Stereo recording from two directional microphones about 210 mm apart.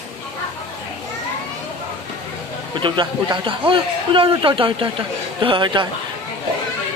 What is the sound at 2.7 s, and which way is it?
Speech, 20° right (ahead or behind).